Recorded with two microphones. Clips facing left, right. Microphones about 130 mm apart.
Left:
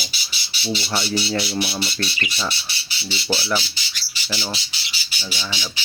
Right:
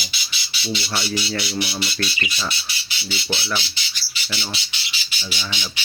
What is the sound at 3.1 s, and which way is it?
Speech, 35° left (ahead or behind).